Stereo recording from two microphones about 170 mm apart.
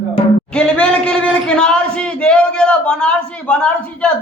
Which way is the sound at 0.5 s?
5° left (ahead or behind).